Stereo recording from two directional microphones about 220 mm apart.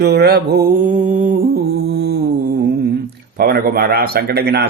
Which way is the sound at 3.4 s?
45° right (ahead or behind).